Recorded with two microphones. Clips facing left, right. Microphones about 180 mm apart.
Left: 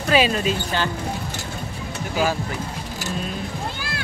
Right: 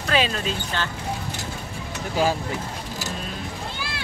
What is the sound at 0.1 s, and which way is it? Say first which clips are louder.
Speech: left 5 dB; 10° left (ahead or behind).